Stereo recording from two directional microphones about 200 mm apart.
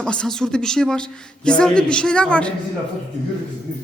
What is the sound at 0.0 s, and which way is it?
Speech, 5° left (ahead or behind).